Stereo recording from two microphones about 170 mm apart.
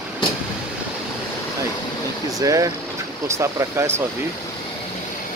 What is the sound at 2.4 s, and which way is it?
Speech, 20° right (ahead or behind).